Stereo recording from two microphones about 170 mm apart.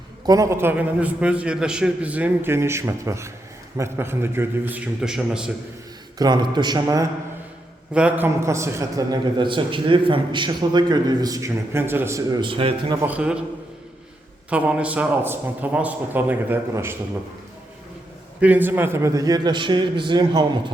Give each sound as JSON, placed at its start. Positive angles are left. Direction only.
{"t": 0.3, "sound": "a man's voice", "side_deg": -20}
{"t": 6.1, "sound": "a man's voice", "side_deg": -25}
{"t": 7.9, "sound": "a man's voice", "side_deg": -10}
{"t": 13.0, "sound": "a man's voice", "side_deg": -10}
{"t": 14.5, "sound": "a man's voice", "side_deg": -5}
{"t": 18.3, "sound": "a man's voice", "side_deg": -10}